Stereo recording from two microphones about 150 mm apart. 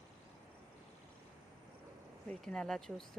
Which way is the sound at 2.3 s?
5° left (ahead or behind).